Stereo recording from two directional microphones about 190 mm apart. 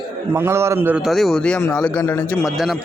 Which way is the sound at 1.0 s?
Centre (ahead or behind).